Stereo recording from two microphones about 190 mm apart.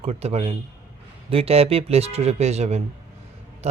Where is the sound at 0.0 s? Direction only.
35° right (ahead or behind).